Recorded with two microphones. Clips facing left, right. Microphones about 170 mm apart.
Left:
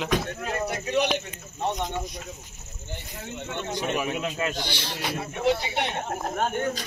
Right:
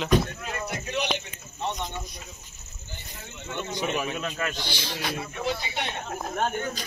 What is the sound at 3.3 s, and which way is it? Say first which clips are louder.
Speech: left 1 dB; 50° left (ahead or behind).